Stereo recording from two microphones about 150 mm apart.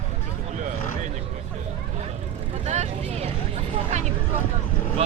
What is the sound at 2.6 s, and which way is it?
Vehicle, 50° right (ahead or behind).